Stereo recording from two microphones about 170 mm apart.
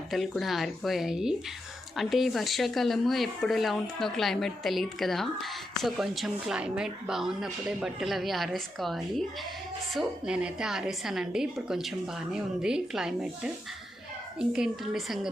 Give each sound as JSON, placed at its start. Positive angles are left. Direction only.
{"t": 0.1, "sound": "speech", "side_deg": 0}